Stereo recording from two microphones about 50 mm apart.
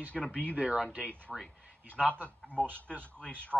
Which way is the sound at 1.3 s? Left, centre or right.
Centre.